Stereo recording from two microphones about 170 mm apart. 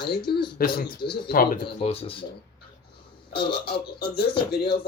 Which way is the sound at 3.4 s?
70° left (ahead or behind).